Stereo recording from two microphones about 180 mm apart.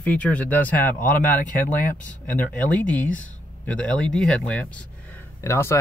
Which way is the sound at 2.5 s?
10° left (ahead or behind).